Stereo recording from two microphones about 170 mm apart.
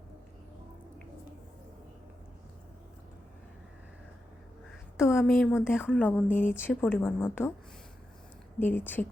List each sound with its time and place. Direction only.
4.9 s speech: 15° left (ahead or behind)
8.5 s speech: 10° left (ahead or behind)